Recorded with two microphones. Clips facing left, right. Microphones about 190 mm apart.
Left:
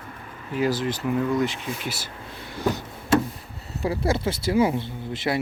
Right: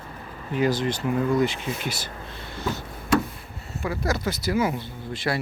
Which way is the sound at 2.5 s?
10° left (ahead or behind).